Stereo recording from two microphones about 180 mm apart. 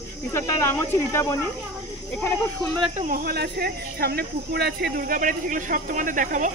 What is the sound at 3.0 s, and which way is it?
Speech, 50° right (ahead or behind).